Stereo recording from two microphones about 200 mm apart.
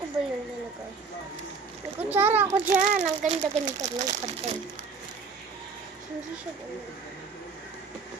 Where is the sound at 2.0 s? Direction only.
10° right (ahead or behind).